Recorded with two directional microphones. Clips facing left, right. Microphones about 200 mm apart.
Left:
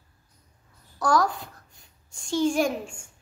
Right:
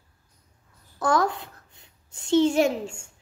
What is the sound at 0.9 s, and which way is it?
Speech, 20° right (ahead or behind).